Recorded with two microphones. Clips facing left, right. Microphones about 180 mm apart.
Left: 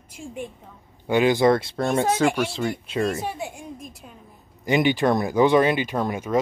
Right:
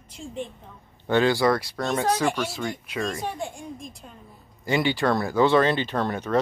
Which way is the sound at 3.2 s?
5° left (ahead or behind).